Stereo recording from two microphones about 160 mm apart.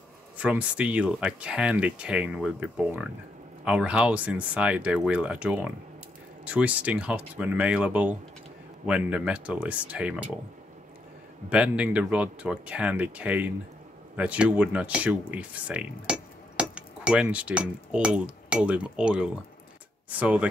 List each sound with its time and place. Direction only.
0.4 s speech: 5° right (ahead or behind)
11.4 s speech: 5° right (ahead or behind)